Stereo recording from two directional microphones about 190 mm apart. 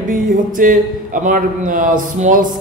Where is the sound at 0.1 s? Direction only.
45° right (ahead or behind).